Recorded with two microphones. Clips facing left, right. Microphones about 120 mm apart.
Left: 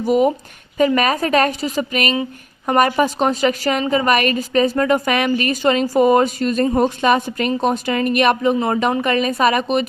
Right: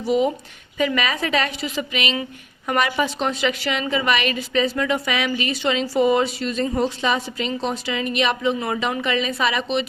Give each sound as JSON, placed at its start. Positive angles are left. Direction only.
{"t": 0.0, "sound": "a woman's voice", "side_deg": 50}